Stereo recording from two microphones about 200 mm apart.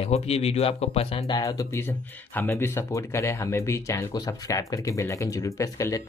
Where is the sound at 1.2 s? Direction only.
20° left (ahead or behind).